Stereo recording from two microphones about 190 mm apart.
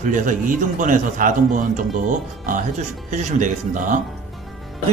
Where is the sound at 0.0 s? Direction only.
45° right (ahead or behind).